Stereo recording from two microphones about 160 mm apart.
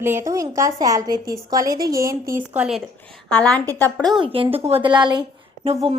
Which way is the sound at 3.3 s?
10° left (ahead or behind).